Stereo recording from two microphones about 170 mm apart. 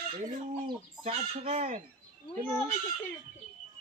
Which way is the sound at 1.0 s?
35° right (ahead or behind).